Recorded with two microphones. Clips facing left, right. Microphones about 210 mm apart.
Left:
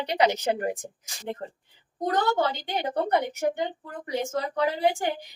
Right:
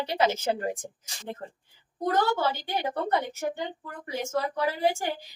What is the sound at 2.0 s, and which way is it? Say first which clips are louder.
A woman's voice: left 1 dB; 20° left (ahead or behind).